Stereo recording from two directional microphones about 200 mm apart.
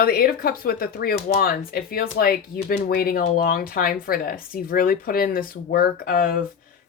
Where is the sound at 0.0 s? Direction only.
50° left (ahead or behind).